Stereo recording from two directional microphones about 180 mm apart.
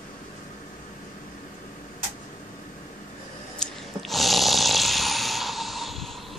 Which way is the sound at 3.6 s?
Centre (ahead or behind).